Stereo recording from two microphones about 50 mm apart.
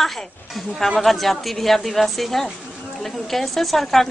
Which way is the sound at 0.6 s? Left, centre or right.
Centre.